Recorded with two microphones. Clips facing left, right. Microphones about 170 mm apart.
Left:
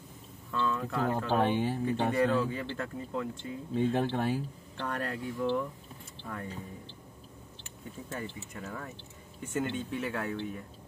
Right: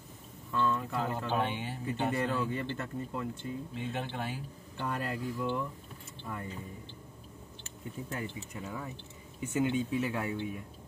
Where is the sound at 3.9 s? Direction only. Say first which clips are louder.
Left 8 dB; 40° left (ahead or behind).